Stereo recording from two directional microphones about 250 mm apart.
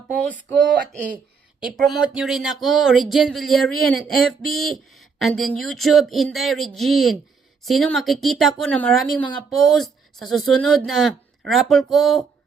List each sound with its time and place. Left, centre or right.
0.1 s speech: centre
1.6 s speech: centre